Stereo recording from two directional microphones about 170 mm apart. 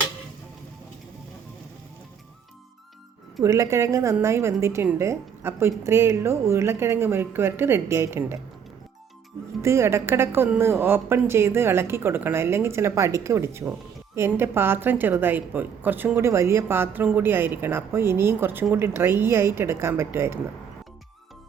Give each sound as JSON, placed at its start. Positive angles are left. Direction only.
{"t": 3.4, "sound": "a woman's voice", "side_deg": -20}
{"t": 9.6, "sound": "a woman's voice", "side_deg": -15}